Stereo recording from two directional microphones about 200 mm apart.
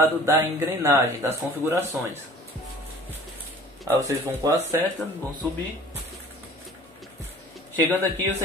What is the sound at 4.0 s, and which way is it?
Speech, 15° right (ahead or behind).